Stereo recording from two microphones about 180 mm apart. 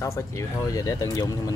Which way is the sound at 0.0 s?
15° left (ahead or behind).